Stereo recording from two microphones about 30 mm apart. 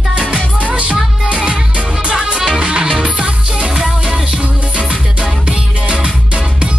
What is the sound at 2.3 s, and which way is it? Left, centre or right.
Music, right.